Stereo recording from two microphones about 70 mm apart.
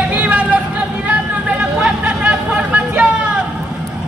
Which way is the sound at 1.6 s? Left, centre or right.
Centre.